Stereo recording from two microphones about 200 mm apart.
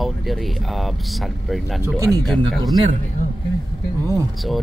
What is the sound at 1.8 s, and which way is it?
Speech, 15° right (ahead or behind).